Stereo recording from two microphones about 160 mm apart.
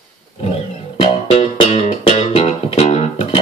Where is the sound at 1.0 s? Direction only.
40° left (ahead or behind).